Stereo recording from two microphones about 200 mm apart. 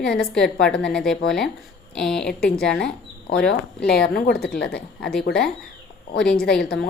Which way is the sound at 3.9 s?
50° left (ahead or behind).